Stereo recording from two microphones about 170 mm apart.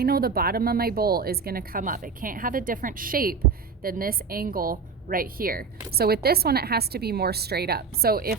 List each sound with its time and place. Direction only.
0.0 s a woman's voice: 65° right (ahead or behind)